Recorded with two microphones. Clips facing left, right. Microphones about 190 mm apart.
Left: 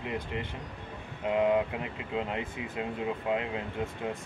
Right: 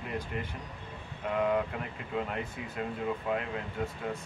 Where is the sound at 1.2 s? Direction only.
20° left (ahead or behind).